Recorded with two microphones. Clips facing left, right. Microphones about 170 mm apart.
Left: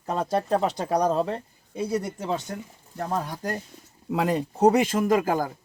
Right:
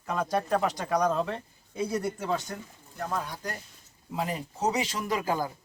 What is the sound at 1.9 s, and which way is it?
Speech, 20° left (ahead or behind).